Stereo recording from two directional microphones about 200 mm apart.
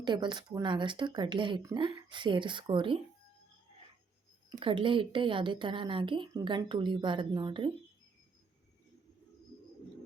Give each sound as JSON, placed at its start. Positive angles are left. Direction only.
{"t": 0.0, "sound": "a woman's voice", "side_deg": -25}
{"t": 4.4, "sound": "a woman's voice", "side_deg": -25}